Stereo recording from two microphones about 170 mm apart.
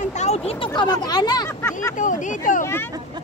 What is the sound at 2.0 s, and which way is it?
Speech, 50° left (ahead or behind).